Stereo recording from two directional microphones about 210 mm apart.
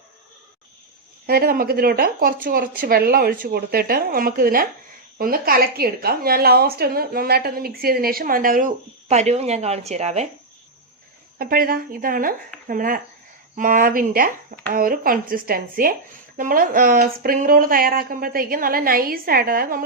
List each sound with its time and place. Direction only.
1.3 s a woman's voice: 45° right (ahead or behind)
11.3 s a woman's voice: 45° right (ahead or behind)